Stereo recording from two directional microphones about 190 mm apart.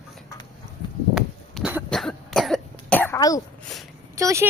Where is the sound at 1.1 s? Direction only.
5° right (ahead or behind); by 3.4 s 15° left (ahead or behind).